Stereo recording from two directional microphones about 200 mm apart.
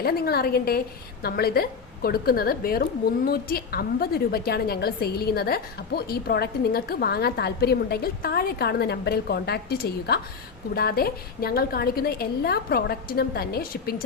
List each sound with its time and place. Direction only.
0.0 s a woman's voice: 50° left (ahead or behind)